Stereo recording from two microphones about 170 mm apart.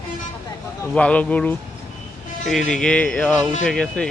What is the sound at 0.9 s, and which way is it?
Speech, 5° left (ahead or behind).